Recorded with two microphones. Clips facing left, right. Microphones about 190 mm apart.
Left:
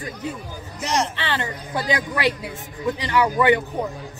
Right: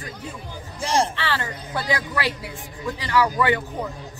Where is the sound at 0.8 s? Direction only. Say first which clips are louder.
Right 2 dB; 30° right (ahead or behind).